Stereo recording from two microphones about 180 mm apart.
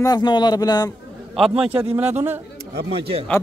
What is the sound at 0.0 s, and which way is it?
Speech, 25° left (ahead or behind).